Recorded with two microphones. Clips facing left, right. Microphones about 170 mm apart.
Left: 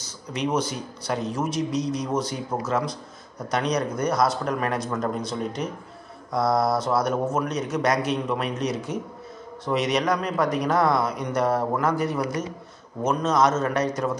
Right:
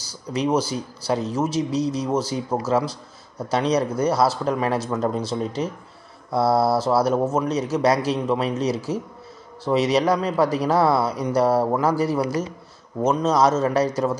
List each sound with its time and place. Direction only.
0.3 s speech: 30° right (ahead or behind)
3.3 s speech: 30° right (ahead or behind)